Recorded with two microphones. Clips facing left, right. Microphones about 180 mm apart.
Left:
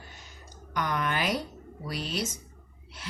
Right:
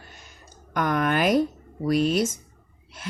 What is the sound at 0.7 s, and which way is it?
Speech, 50° right (ahead or behind).